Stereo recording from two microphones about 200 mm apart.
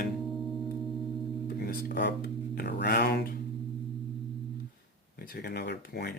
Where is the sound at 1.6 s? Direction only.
50° left (ahead or behind).